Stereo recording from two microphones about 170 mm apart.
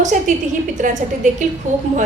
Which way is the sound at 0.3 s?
45° right (ahead or behind).